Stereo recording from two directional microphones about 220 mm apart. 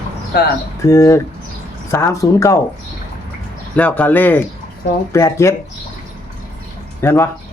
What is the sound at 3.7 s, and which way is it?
Speech, 5° left (ahead or behind).